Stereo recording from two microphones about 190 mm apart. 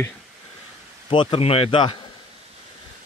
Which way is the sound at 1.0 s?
30° left (ahead or behind).